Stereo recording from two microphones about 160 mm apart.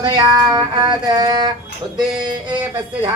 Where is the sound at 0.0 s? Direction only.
25° right (ahead or behind).